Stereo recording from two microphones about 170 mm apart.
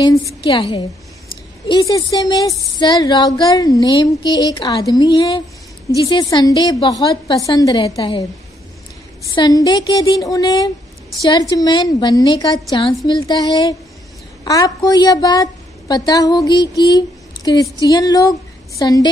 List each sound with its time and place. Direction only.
0.0 s a woman's voice: 20° left (ahead or behind)
0.4 s a woman's voice: 30° left (ahead or behind)
1.7 s a woman's voice: 20° left (ahead or behind)
9.3 s a woman's voice: 20° left (ahead or behind)